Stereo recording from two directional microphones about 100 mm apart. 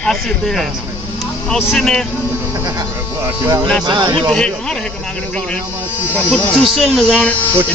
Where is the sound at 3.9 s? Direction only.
50° right (ahead or behind).